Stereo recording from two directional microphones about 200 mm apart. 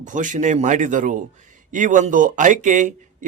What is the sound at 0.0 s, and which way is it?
Speech, 40° right (ahead or behind).